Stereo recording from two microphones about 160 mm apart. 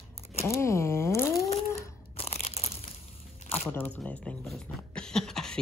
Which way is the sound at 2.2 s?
40° left (ahead or behind).